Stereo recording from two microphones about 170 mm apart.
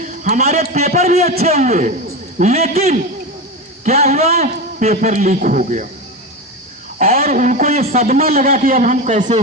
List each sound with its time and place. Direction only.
0.0 s a man's voice: 45° right (ahead or behind)
7.0 s a man's voice: 40° right (ahead or behind)